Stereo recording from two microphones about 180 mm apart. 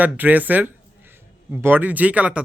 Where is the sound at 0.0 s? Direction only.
10° right (ahead or behind).